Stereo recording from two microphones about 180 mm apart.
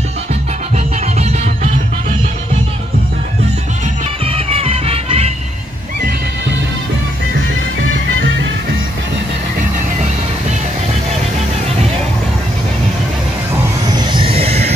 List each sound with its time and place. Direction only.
1.1 s music: 35° right (ahead or behind)
4.3 s music: 35° right (ahead or behind)
13.8 s a sound: 25° right (ahead or behind)